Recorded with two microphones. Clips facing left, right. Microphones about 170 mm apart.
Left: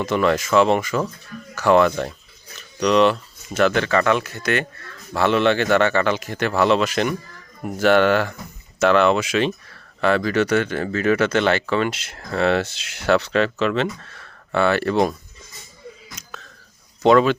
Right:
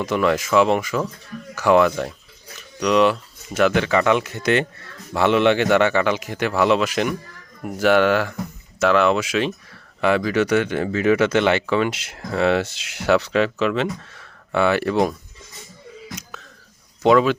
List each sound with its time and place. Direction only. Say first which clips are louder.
0.0 s speech: even; 10° right (ahead or behind)
16.1 s a sound: right 3 dB; 10° right (ahead or behind)
17.0 s speech: left 1 dB; 5° right (ahead or behind)